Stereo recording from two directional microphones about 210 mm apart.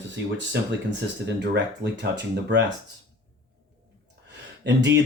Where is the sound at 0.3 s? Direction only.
60° right (ahead or behind).